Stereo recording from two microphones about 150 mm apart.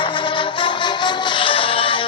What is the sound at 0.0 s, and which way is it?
Music, 35° left (ahead or behind).